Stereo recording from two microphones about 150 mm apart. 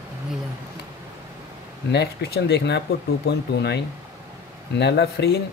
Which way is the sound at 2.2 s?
90° left.